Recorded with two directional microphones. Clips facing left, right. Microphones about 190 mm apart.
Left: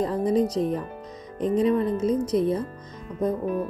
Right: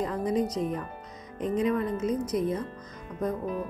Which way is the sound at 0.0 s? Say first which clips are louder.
Left 5 dB; 30° left (ahead or behind).